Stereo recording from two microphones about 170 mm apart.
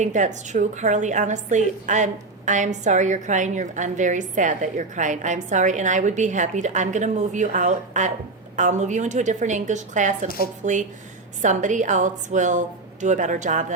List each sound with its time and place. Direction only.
0.0 s a woman's voice: 45° right (ahead or behind)